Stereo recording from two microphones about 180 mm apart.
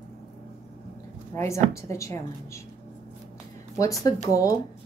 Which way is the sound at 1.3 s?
15° left (ahead or behind).